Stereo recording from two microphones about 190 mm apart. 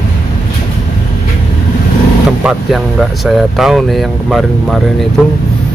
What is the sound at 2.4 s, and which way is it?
Speech, centre (ahead or behind).